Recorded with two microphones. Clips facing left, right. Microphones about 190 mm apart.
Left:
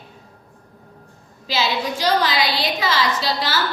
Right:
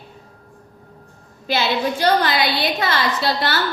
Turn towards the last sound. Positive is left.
turn(degrees=-60)  # may be behind; listen again after turning